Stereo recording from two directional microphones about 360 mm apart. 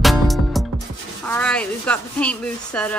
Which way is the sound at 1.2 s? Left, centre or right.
Centre.